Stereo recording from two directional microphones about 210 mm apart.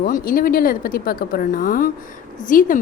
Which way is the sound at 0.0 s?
40° left (ahead or behind).